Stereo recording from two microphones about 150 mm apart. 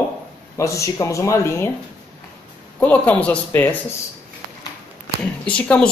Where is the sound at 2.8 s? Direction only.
10° left (ahead or behind).